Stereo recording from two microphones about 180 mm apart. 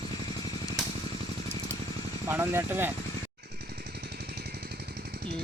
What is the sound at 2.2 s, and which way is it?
Speech, 15° right (ahead or behind).